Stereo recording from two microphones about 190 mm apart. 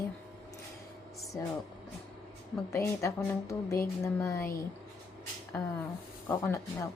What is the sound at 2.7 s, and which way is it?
A woman's voice, 15° left (ahead or behind).